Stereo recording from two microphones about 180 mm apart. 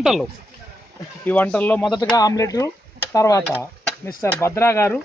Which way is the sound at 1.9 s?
20° left (ahead or behind).